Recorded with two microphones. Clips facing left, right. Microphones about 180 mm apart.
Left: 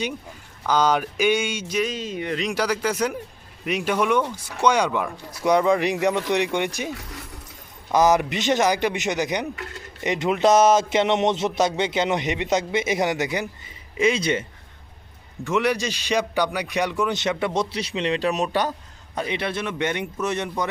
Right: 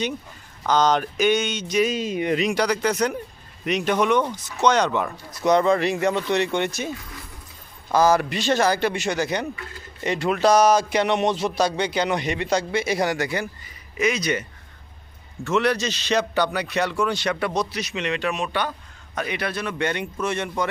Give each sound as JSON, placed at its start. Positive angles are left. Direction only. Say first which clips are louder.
{"t": 0.7, "sound": "speech", "louder": "right 1 dB", "side_deg": 10}
{"t": 1.8, "sound": "speech", "louder": "right 5 dB", "side_deg": -10}
{"t": 2.6, "sound": "speech", "louder": "right 2 dB", "side_deg": 5}
{"t": 7.9, "sound": "speech", "louder": "even", "side_deg": 20}
{"t": 15.4, "sound": "speech", "louder": "right 1 dB", "side_deg": 15}
{"t": 19.1, "sound": "speech", "louder": "left 1 dB", "side_deg": 25}